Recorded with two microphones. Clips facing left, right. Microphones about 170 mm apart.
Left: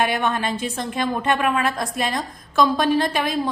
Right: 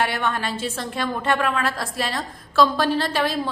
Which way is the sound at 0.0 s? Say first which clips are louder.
Left 2 dB; 20° left (ahead or behind).